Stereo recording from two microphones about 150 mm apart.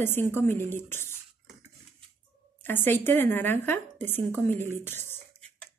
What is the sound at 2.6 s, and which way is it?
Speech, 15° left (ahead or behind).